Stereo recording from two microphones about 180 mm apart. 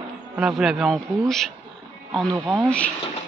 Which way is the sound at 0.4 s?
5° right (ahead or behind).